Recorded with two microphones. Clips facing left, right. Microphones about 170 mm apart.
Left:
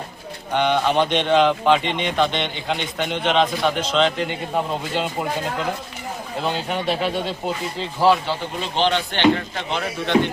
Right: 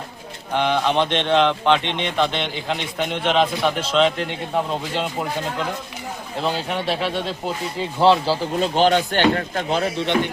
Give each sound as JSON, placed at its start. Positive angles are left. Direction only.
{"t": 0.5, "sound": "speech", "side_deg": 0}
{"t": 6.4, "sound": "speech", "side_deg": 0}
{"t": 8.0, "sound": "speech", "side_deg": -25}
{"t": 8.6, "sound": "speech", "side_deg": -45}
{"t": 10.1, "sound": "speech", "side_deg": 20}